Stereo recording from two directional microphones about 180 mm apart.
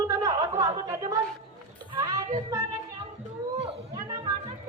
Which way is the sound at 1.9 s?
20° right (ahead or behind).